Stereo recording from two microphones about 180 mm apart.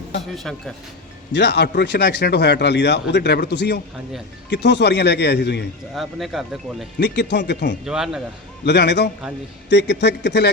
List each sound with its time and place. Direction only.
0.3 s speech: 5° left (ahead or behind)
1.3 s speech: 70° left (ahead or behind)
5.9 s speech: centre (ahead or behind)
7.0 s speech: 70° left (ahead or behind)
7.9 s speech: 5° right (ahead or behind)
8.6 s speech: 70° left (ahead or behind)